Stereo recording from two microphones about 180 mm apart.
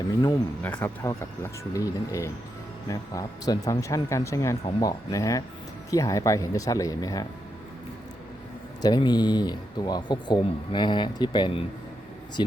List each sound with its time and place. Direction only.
0.6 s speech: 10° left (ahead or behind)
8.8 s speech: 25° left (ahead or behind)